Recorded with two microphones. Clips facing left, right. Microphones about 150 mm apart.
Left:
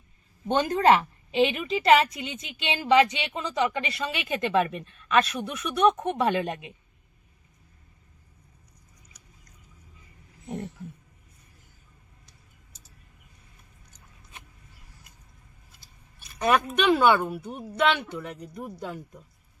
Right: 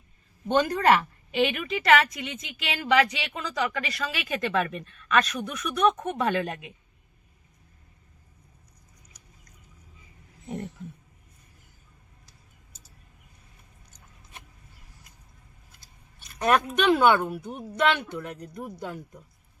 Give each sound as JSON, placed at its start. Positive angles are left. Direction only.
{"t": 0.4, "sound": "a woman's voice", "side_deg": 20}
{"t": 16.3, "sound": "a woman's voice", "side_deg": 5}